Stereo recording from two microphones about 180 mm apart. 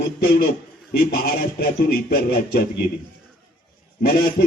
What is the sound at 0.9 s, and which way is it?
Music, 55° left (ahead or behind).